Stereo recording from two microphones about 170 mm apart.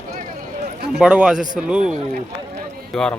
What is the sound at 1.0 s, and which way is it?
A man's voice, 5° right (ahead or behind).